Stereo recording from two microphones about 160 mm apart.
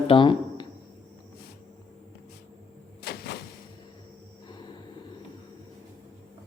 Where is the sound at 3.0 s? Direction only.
85° left.